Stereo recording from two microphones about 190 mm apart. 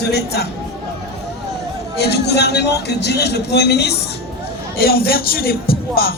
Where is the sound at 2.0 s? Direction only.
60° left (ahead or behind).